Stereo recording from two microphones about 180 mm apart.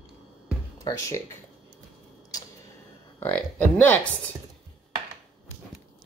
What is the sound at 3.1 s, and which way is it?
Speech, 10° left (ahead or behind).